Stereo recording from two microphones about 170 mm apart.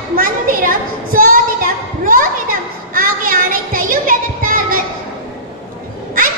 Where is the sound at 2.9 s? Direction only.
55° right (ahead or behind).